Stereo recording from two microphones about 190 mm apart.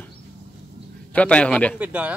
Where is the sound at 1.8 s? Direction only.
5° right (ahead or behind).